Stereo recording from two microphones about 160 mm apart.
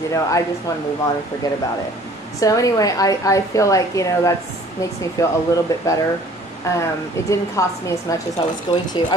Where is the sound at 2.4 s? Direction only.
20° left (ahead or behind).